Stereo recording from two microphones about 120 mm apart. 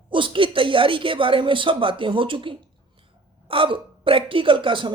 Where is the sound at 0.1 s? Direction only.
45° right (ahead or behind).